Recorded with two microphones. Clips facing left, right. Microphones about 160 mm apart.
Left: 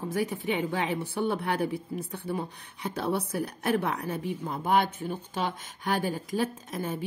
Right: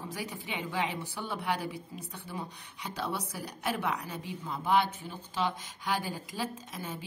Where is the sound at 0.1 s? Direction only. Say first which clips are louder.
Left 12 dB; 50° left (ahead or behind).